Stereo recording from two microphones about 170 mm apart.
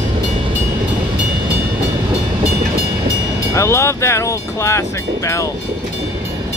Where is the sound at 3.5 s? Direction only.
15° left (ahead or behind).